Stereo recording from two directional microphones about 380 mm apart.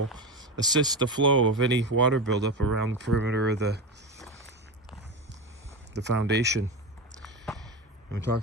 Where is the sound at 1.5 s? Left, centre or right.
Right.